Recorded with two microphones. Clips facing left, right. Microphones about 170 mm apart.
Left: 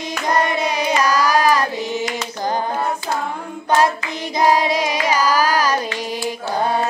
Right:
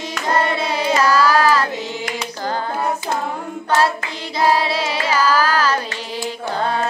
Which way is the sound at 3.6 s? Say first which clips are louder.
Left 1 dB; 15° left (ahead or behind).